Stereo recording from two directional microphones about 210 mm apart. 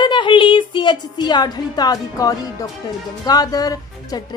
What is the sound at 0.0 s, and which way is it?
A woman's voice, 20° left (ahead or behind).